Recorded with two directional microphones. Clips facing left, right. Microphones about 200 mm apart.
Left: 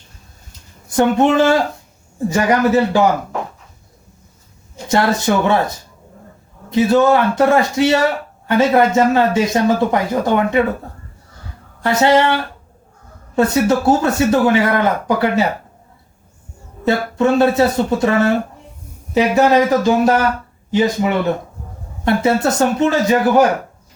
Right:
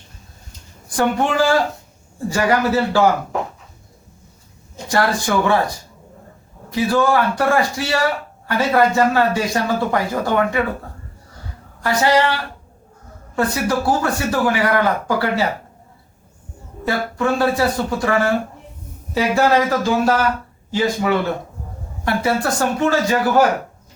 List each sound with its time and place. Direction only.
0.9 s speech: 20° left (ahead or behind)
4.9 s speech: 25° left (ahead or behind)
11.8 s speech: 25° left (ahead or behind)
13.3 s speech: 25° left (ahead or behind)
16.8 s speech: 25° left (ahead or behind)